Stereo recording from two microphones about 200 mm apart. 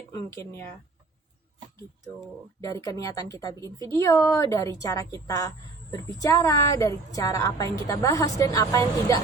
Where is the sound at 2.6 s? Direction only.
15° left (ahead or behind).